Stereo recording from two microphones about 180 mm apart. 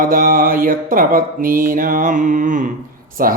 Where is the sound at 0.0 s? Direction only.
50° right (ahead or behind).